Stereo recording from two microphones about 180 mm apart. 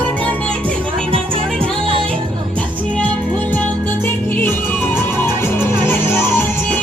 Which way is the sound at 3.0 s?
10° left (ahead or behind).